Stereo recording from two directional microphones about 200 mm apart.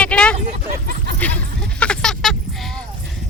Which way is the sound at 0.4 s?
45° right (ahead or behind).